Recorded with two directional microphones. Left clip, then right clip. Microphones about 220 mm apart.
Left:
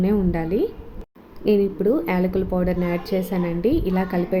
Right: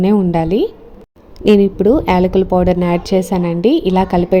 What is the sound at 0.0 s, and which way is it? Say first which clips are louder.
A woman's voice: right 8 dB; 30° right (ahead or behind).